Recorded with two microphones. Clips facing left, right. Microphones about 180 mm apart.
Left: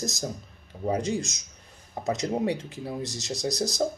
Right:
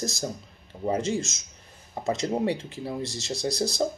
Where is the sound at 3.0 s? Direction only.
15° left (ahead or behind).